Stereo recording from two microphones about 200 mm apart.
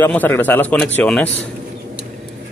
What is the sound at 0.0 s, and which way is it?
Speech, 10° left (ahead or behind).